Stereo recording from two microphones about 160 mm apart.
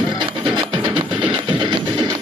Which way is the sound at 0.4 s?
30° right (ahead or behind).